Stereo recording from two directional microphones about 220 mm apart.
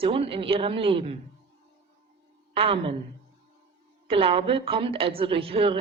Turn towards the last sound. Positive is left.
turn(degrees=-25)  # may be behind; listen again after turning